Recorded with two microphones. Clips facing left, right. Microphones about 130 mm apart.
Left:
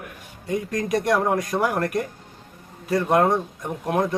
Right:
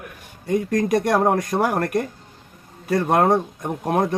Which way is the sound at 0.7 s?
45° right (ahead or behind).